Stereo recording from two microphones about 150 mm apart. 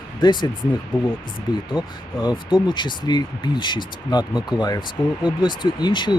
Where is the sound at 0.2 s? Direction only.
30° left (ahead or behind).